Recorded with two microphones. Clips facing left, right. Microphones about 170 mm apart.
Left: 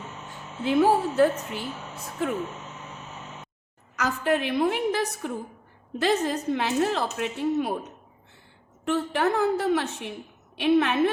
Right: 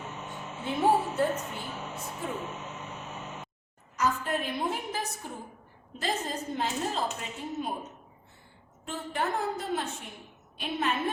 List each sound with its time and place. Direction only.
0.6 s a woman's voice: 85° left
3.9 s a woman's voice: 85° left
8.8 s a woman's voice: 75° left (ahead or behind)